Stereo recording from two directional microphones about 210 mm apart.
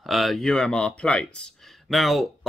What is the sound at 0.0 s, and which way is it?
Speech, centre (ahead or behind).